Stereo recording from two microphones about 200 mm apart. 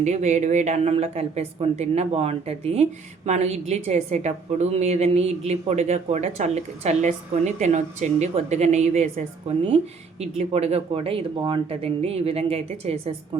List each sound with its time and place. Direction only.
0.0 s a woman's voice: 35° right (ahead or behind)